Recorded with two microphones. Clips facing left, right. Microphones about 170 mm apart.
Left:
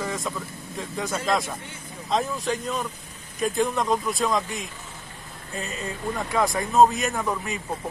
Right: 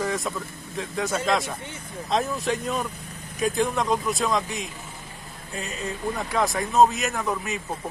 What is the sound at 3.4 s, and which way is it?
Speech, centre (ahead or behind).